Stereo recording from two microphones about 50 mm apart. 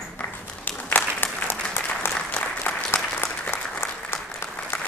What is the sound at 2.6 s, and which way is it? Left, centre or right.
Applause, left.